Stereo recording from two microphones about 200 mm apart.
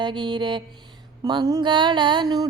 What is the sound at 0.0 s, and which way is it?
Music, 25° right (ahead or behind).